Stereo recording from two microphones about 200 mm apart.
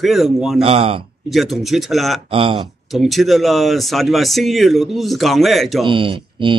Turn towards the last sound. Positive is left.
turn(degrees=-25)  # may be behind; listen again after turning